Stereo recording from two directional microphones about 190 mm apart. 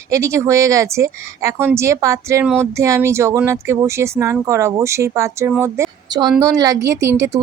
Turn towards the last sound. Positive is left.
turn(degrees=-15)  # may be behind; listen again after turning